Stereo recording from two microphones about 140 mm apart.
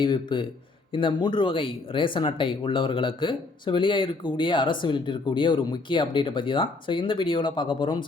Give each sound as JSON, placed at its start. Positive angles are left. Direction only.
{"t": 0.0, "sound": "speech", "side_deg": 35}